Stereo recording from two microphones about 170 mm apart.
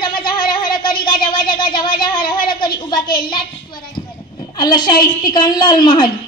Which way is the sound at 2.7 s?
60° left (ahead or behind).